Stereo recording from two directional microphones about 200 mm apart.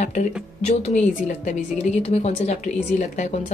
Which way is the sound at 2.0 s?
35° left (ahead or behind).